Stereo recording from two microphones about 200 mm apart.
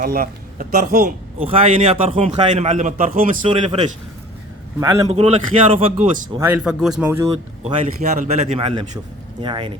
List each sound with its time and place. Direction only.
0.0 s speech: 45° right (ahead or behind)
1.4 s a man's voice: 30° right (ahead or behind)
3.4 s speech: 25° right (ahead or behind)
5.0 s a man's voice: 35° right (ahead or behind)
6.4 s speech: 5° right (ahead or behind)
7.6 s a man's voice: 35° right (ahead or behind)